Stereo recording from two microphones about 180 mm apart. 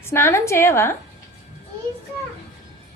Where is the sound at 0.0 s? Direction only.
15° left (ahead or behind).